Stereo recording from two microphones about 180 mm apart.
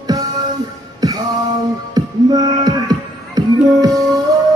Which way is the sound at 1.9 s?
20° right (ahead or behind).